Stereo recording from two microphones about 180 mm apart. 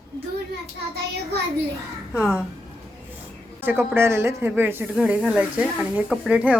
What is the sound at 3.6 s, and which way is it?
Speech, 10° right (ahead or behind).